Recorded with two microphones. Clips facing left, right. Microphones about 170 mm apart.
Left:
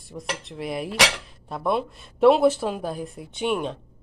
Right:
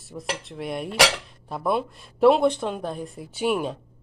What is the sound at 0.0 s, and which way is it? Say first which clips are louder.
Speech: right 1 dB; centre (ahead or behind).